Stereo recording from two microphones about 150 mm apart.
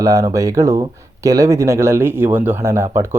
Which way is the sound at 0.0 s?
20° right (ahead or behind).